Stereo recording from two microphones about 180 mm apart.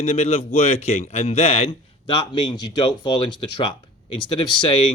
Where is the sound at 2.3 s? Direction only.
25° left (ahead or behind).